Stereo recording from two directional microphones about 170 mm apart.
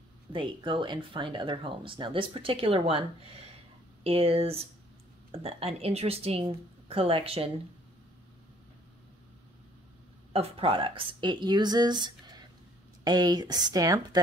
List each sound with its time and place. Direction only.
0.3 s a woman's voice: 30° right (ahead or behind)
10.3 s speech: 35° right (ahead or behind)